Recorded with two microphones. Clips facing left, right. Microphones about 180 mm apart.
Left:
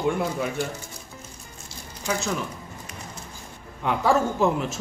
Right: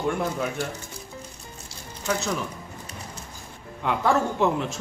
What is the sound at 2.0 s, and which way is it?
Speech, 5° left (ahead or behind).